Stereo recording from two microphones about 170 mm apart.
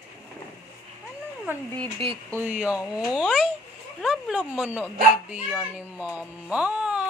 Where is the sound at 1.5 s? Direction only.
10° right (ahead or behind).